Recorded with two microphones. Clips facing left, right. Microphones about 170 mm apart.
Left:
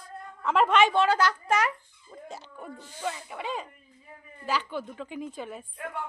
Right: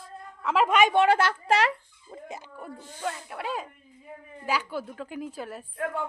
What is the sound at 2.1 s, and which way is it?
Speech, 40° right (ahead or behind).